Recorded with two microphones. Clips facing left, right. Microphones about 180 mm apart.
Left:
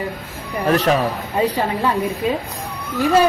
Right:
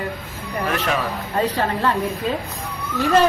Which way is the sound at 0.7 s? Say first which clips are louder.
Left 8 dB; 40° left (ahead or behind).